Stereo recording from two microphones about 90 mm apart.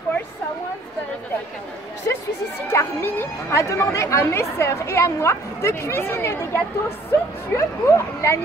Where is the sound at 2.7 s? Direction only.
25° left (ahead or behind).